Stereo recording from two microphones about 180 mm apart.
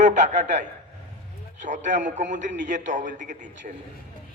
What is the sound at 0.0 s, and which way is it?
A man's voice, 40° right (ahead or behind).